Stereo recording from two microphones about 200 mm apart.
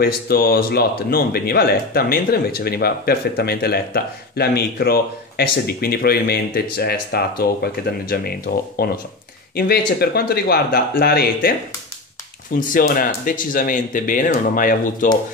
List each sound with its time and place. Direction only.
0.0 s speech: 50° left (ahead or behind)
12.5 s speech: 45° left (ahead or behind)